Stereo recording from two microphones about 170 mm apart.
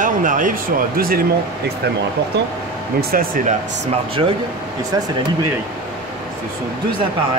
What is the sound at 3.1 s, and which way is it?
Speech, 55° right (ahead or behind).